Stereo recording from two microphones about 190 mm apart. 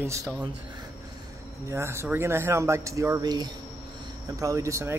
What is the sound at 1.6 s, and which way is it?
Speech, 15° right (ahead or behind).